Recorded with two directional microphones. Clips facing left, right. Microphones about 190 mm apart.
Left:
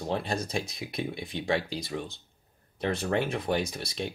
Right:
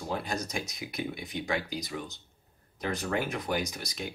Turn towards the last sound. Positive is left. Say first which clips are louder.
# left 3 dB
turn(degrees=30)  # may be behind; listen again after turning